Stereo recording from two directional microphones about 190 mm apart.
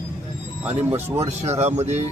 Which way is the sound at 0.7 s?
35° right (ahead or behind).